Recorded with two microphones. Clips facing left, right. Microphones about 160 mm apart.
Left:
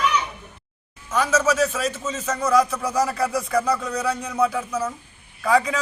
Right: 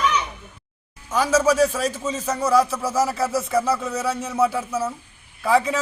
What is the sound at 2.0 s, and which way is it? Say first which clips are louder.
Speech: right 1 dB; 10° right (ahead or behind).